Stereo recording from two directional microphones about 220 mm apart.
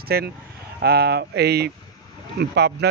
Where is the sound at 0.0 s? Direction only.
45° right (ahead or behind).